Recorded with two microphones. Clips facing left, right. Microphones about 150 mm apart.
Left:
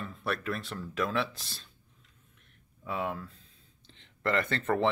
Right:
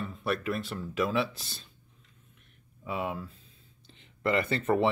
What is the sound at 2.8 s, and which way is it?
Speech, 5° right (ahead or behind).